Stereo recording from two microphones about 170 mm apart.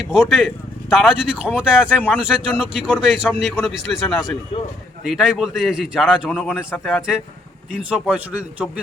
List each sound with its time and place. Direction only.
0.1 s a man's voice: 5° right (ahead or behind)
4.5 s speech: 35° left (ahead or behind)
5.0 s a man's voice: centre (ahead or behind)